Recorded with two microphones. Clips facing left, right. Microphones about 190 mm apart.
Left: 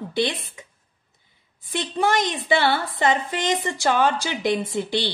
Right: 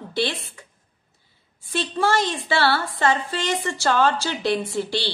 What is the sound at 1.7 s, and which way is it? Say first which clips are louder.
A woman's voice: even; 20° left (ahead or behind).